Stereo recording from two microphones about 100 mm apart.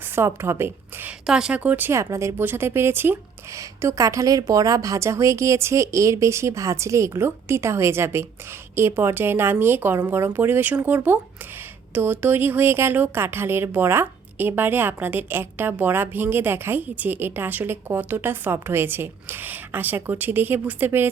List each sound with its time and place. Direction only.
0.2 s a woman's voice: 25° right (ahead or behind)
1.3 s speech: 5° right (ahead or behind)
1.9 s speech: 30° right (ahead or behind)